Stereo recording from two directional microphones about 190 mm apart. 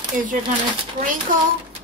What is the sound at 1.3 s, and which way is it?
Speech, 45° right (ahead or behind).